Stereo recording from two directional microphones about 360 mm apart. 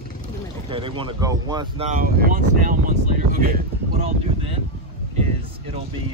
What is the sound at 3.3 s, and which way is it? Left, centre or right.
Wind noise, right.